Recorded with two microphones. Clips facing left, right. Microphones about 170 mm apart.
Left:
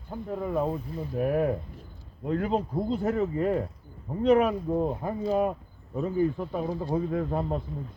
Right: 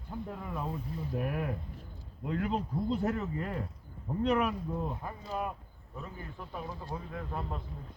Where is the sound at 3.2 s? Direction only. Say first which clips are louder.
Left 10 dB; 60° left (ahead or behind).